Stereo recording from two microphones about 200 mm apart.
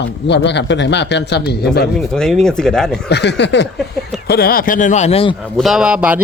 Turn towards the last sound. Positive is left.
turn(degrees=-5)  # may be behind; listen again after turning